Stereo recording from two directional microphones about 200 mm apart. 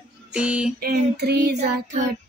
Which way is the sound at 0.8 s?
55° right (ahead or behind).